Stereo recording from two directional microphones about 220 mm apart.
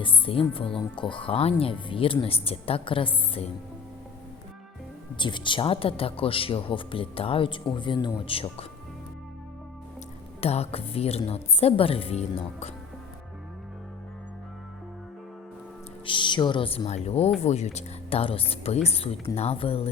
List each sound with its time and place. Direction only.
0.0 s speech: 25° left (ahead or behind)
5.1 s speech: 20° left (ahead or behind)
10.4 s speech: 25° left (ahead or behind)
16.0 s speech: 20° left (ahead or behind)